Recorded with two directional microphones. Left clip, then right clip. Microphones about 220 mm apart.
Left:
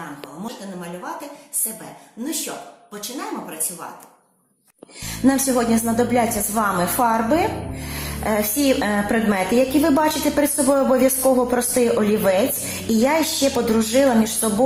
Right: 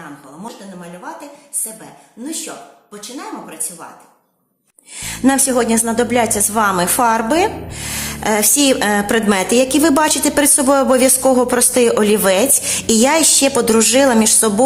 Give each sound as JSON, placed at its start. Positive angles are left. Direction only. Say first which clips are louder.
{"t": 5.0, "sound": "a woman's voice", "louder": "right 4 dB", "side_deg": -35}